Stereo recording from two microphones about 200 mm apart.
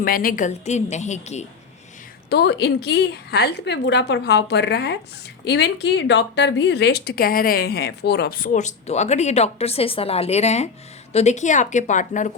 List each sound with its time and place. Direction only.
0.0 s a woman's voice: 45° left (ahead or behind)
2.3 s a woman's voice: 55° left (ahead or behind); by 12.3 s 40° left (ahead or behind)